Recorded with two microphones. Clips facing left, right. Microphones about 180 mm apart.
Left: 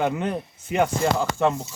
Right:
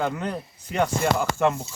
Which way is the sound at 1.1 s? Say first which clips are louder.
Even; 5° right (ahead or behind).